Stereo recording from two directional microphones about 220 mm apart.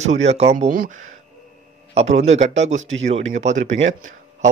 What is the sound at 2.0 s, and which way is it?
Speech, 30° right (ahead or behind).